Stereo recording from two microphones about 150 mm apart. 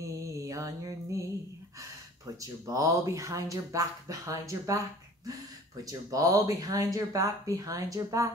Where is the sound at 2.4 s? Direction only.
20° right (ahead or behind).